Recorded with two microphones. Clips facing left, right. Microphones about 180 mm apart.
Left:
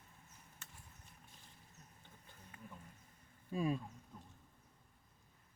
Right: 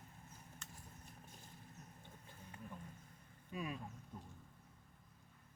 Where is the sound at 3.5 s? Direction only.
30° left (ahead or behind).